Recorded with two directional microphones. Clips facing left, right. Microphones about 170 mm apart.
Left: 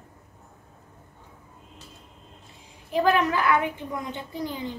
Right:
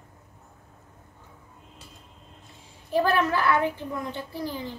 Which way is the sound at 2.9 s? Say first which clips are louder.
Left 1 dB; 15° left (ahead or behind).